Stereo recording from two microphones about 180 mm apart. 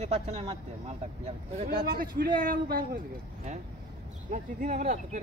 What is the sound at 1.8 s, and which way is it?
A man's voice, 55° right (ahead or behind).